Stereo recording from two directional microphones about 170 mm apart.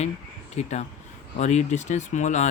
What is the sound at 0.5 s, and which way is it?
Speech, 40° left (ahead or behind).